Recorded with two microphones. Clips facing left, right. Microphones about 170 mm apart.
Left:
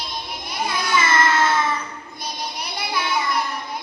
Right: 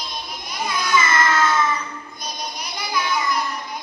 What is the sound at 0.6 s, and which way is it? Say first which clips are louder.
Child singing: right 1 dB; 30° left (ahead or behind).